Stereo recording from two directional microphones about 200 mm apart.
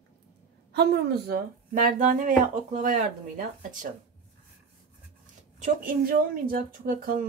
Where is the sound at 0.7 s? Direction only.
55° right (ahead or behind).